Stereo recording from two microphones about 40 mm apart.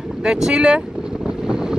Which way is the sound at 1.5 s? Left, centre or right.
Centre.